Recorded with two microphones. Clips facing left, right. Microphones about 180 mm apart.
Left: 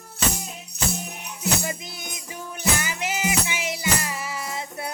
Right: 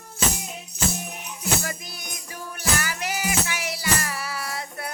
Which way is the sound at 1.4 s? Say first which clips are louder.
Left 1 dB; 20° left (ahead or behind).